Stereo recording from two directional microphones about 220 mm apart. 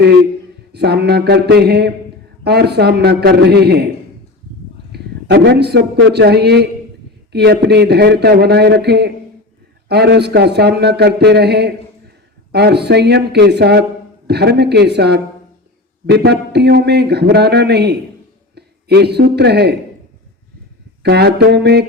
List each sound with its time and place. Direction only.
0.7 s speech: 50° right (ahead or behind)
4.9 s a man's voice: 50° right (ahead or behind)
21.0 s speech: 50° right (ahead or behind)